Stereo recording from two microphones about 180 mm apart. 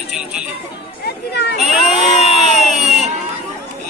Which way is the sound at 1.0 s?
65° left (ahead or behind).